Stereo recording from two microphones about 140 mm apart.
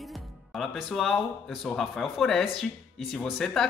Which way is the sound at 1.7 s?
5° left (ahead or behind).